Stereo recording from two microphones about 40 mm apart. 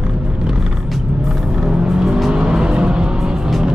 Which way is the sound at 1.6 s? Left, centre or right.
Centre.